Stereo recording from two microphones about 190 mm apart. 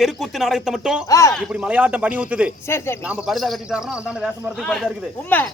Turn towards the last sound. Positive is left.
turn(degrees=5)  # may be behind; listen again after turning